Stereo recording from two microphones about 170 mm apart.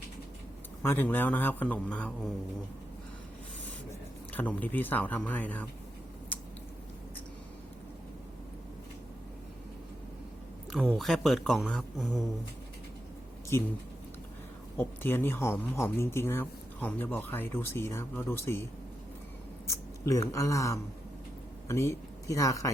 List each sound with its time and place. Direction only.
0.8 s speech: 10° left (ahead or behind)
4.3 s speech: 10° left (ahead or behind)
10.7 s speech: 5° right (ahead or behind)
14.8 s speech: 10° left (ahead or behind)